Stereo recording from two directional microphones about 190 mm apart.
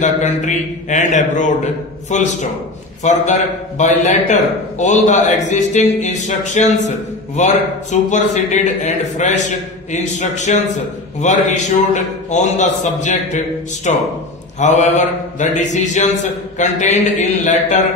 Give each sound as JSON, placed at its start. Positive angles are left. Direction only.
{"t": 0.0, "sound": "a man's voice", "side_deg": 40}